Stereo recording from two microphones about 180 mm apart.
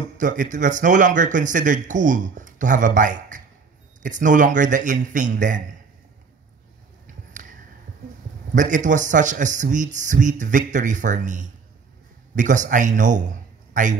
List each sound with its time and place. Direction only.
0.2 s a man's voice: 45° right (ahead or behind)
7.1 s a sound: 45° right (ahead or behind)
8.5 s a man's voice: 45° right (ahead or behind)